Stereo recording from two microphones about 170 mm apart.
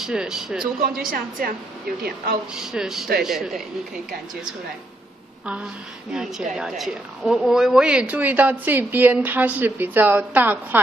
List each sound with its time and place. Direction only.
0.0 s speech: 5° right (ahead or behind)
0.9 s a woman's voice: 60° right (ahead or behind)
2.6 s speech: centre (ahead or behind)
6.1 s a woman's voice: 5° right (ahead or behind)